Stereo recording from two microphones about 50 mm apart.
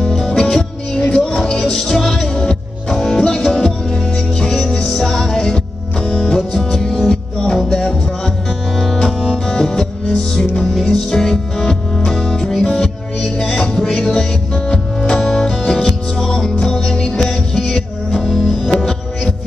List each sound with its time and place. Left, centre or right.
0.1 s music: centre
6.0 s music: left
6.3 s music: centre